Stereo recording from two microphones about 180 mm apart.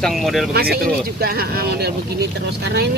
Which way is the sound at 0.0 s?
Centre (ahead or behind).